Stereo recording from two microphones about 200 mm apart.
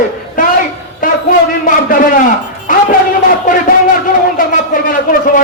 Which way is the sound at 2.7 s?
40° left (ahead or behind).